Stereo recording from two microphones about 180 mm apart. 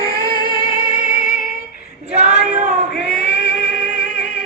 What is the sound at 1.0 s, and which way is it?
Music, 45° left (ahead or behind).